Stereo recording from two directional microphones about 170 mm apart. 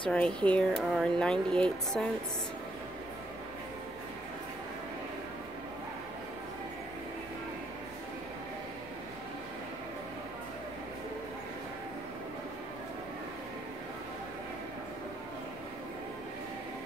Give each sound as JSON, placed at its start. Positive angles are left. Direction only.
{"t": 0.1, "sound": "speech", "side_deg": 5}